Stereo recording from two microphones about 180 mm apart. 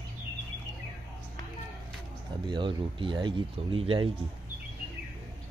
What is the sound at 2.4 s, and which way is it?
Speech, 25° right (ahead or behind).